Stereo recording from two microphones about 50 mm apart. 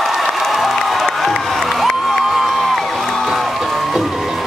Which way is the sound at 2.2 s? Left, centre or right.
Centre.